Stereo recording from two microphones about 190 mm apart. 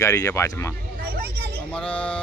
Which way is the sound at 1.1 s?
55° right (ahead or behind).